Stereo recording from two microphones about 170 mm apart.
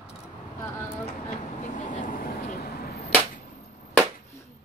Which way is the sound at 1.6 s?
45° left (ahead or behind).